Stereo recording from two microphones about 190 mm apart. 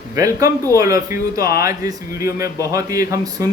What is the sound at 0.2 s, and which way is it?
Speech, 15° right (ahead or behind).